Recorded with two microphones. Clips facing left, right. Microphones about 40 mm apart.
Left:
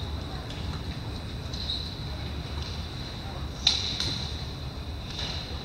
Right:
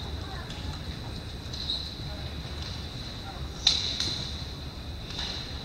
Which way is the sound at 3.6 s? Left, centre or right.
Centre.